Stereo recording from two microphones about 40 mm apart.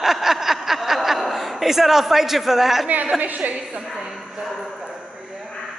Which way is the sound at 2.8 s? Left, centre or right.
Right.